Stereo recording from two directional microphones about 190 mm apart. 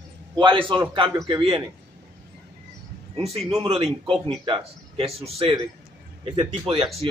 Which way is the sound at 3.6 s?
30° right (ahead or behind).